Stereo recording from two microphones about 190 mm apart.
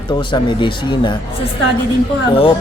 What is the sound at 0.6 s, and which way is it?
Speech, 25° left (ahead or behind).